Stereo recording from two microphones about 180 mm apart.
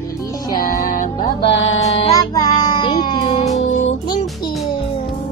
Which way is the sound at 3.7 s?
40° left (ahead or behind).